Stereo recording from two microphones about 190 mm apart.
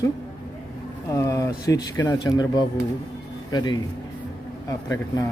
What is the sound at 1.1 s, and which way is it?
Speech, 15° left (ahead or behind).